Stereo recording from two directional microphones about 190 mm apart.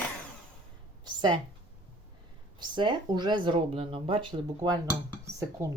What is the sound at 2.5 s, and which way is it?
Speech, 25° right (ahead or behind).